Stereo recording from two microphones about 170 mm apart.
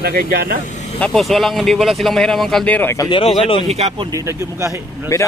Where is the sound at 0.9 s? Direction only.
5° left (ahead or behind).